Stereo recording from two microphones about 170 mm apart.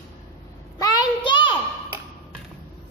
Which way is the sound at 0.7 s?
25° left (ahead or behind).